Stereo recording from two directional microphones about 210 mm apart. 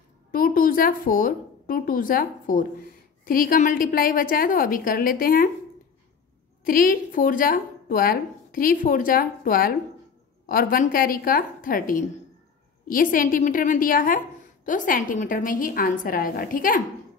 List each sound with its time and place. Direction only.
0.3 s a woman's voice: 40° left (ahead or behind)
6.6 s a woman's voice: 40° left (ahead or behind)